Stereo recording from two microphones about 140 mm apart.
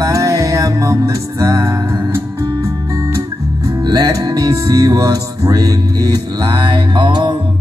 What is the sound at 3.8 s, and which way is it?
Music, 25° right (ahead or behind).